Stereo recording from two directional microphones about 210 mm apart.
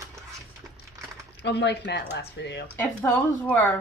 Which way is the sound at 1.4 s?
55° left (ahead or behind).